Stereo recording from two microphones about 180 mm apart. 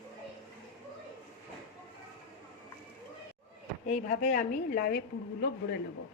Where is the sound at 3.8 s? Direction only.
40° left (ahead or behind); by 5.5 s 55° left (ahead or behind).